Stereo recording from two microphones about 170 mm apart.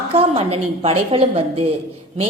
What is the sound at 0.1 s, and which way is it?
A man's voice, 35° right (ahead or behind).